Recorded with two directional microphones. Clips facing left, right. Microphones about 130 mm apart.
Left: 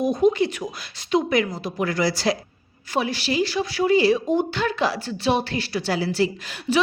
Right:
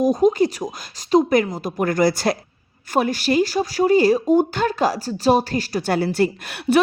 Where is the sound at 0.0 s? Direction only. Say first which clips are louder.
Right 3 dB; 40° right (ahead or behind).